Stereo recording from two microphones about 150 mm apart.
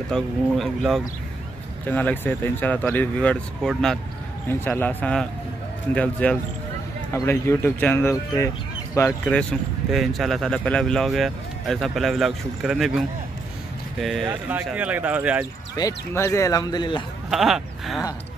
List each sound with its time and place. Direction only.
0.1 s speech: centre (ahead or behind)
4.5 s speech: 15° left (ahead or behind)
9.2 s speech: 5° left (ahead or behind)
15.7 s speech: 20° left (ahead or behind)
17.3 s speech: centre (ahead or behind)